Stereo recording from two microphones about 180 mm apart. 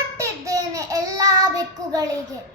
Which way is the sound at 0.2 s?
20° right (ahead or behind).